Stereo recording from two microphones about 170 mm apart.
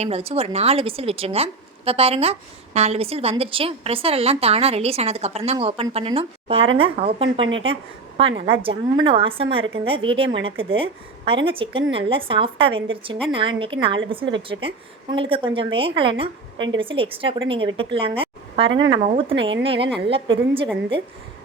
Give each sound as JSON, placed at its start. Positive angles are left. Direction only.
{"t": 0.0, "sound": "a woman's voice", "side_deg": -35}